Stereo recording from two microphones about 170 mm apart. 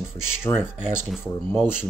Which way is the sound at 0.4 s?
10° left (ahead or behind).